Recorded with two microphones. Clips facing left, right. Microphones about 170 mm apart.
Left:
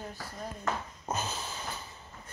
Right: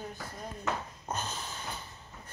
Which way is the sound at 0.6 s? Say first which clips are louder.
Even; 5° left (ahead or behind).